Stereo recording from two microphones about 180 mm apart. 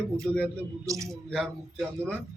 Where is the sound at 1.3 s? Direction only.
5° left (ahead or behind).